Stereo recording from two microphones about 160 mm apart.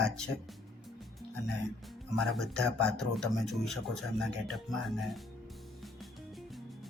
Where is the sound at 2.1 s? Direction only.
Centre (ahead or behind).